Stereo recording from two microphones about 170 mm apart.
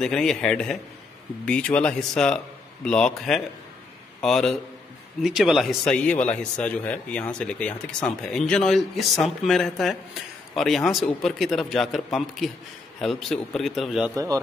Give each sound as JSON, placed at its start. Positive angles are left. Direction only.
{"t": 0.0, "sound": "speech", "side_deg": 5}
{"t": 14.1, "sound": "a man's voice", "side_deg": -20}